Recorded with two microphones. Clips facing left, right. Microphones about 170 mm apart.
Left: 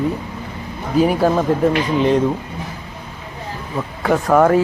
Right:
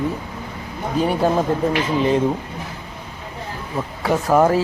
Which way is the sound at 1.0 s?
5° left (ahead or behind).